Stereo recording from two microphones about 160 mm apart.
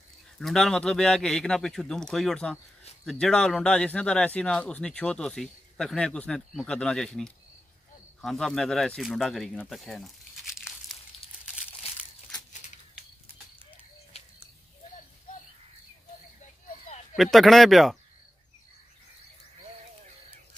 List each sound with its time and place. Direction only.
0.4 s speech: centre (ahead or behind)
12.5 s a sound: 50° left (ahead or behind)
14.1 s bird: 40° left (ahead or behind)
17.1 s speech: centre (ahead or behind)